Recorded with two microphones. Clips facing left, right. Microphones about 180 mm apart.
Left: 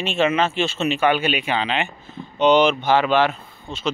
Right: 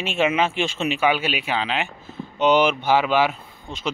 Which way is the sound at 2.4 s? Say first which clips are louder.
Left 2 dB; 10° right (ahead or behind).